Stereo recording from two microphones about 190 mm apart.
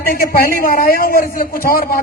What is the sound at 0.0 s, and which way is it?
A man's voice, 50° left (ahead or behind).